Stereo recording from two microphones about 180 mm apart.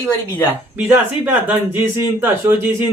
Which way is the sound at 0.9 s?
10° right (ahead or behind).